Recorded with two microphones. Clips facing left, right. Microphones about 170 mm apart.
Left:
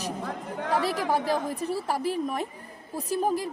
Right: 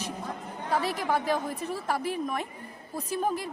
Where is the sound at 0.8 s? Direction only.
40° left (ahead or behind).